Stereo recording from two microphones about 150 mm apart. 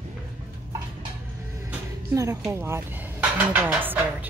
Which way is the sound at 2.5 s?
15° right (ahead or behind).